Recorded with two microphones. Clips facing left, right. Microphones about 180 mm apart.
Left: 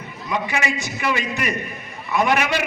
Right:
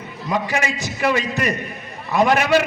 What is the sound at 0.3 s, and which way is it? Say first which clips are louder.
A man's voice: right 2 dB; 35° right (ahead or behind).